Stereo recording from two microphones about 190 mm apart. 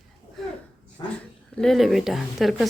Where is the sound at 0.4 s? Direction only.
Centre (ahead or behind).